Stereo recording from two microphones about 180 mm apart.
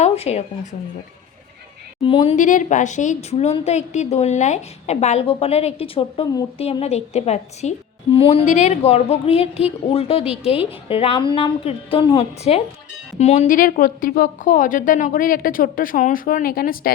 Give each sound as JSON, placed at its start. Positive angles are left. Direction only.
{"t": 0.0, "sound": "speech", "side_deg": 35}
{"t": 2.0, "sound": "a woman's voice", "side_deg": 30}
{"t": 2.3, "sound": "a woman's voice", "side_deg": 45}